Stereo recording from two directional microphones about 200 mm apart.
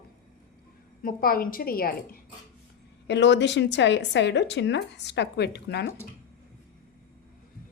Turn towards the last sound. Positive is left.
turn(degrees=55)  # may be behind; listen again after turning